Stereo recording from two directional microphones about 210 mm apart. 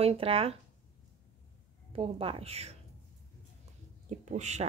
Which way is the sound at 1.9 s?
25° right (ahead or behind).